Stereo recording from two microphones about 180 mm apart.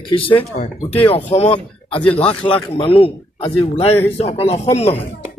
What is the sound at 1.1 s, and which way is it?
Speech, 30° left (ahead or behind).